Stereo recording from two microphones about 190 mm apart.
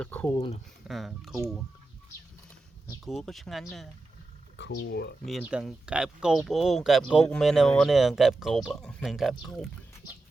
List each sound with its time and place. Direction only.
0.0 s speech: 10° left (ahead or behind)
3.0 s speech: centre (ahead or behind)
4.5 s speech: 60° left (ahead or behind)
5.2 s speech: 5° right (ahead or behind)